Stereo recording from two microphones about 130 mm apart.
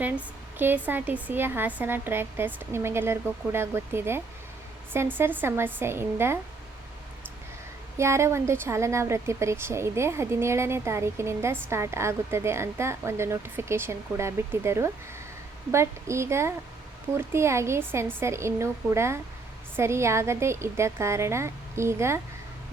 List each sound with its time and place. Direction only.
0.0 s speech: 15° right (ahead or behind)
7.9 s speech: 20° right (ahead or behind)